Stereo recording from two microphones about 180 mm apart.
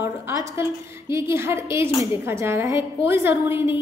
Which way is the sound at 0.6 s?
15° right (ahead or behind).